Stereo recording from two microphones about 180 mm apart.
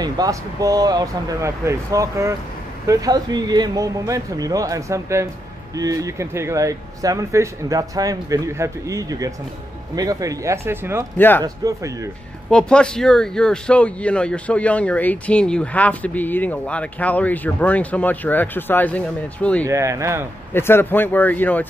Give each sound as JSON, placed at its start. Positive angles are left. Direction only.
{"t": 0.0, "sound": "speech", "side_deg": -20}
{"t": 11.1, "sound": "speech", "side_deg": 10}
{"t": 11.4, "sound": "speech", "side_deg": -20}
{"t": 12.4, "sound": "speech", "side_deg": 5}
{"t": 19.6, "sound": "speech", "side_deg": -15}
{"t": 20.5, "sound": "speech", "side_deg": 10}